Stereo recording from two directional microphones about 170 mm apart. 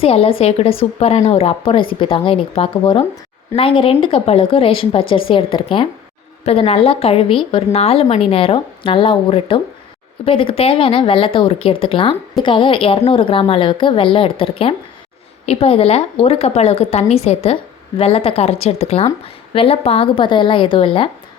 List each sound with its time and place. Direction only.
0.0 s a woman's voice: 35° left (ahead or behind)